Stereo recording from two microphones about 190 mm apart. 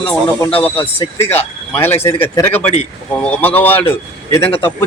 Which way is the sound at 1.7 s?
15° left (ahead or behind).